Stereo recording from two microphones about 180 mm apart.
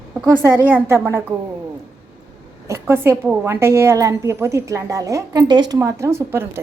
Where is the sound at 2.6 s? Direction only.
15° right (ahead or behind).